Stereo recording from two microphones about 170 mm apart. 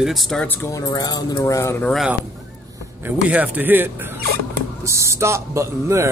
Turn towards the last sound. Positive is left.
turn(degrees=-15)  # may be behind; listen again after turning